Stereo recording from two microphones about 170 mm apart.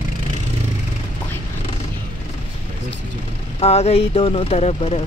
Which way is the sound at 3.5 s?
40° left (ahead or behind).